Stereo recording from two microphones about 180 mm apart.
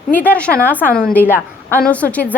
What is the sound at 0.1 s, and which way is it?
A woman's voice, 10° left (ahead or behind).